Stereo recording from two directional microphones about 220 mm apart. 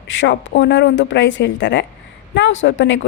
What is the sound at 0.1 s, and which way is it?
A woman's voice, 55° left (ahead or behind).